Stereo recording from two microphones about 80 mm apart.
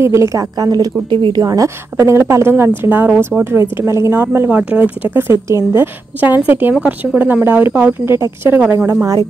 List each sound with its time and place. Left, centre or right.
0.0 s a woman's voice: right
0.6 s speech: right
1.1 s speech: right
1.4 s a woman's voice: right
5.3 s a woman's voice: right
6.2 s a woman's voice: right